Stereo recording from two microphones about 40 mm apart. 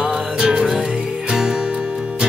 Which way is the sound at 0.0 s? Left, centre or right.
Centre.